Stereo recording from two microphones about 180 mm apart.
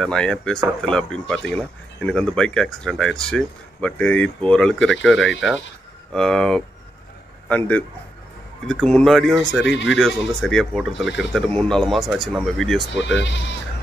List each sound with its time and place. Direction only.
0.0 s a man's voice: 5° left (ahead or behind)
12.9 s speech: 80° left